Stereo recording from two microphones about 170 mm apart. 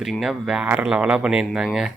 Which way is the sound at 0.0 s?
Centre (ahead or behind).